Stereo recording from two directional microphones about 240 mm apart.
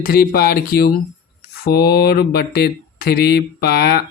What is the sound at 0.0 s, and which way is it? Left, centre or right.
Speech, left.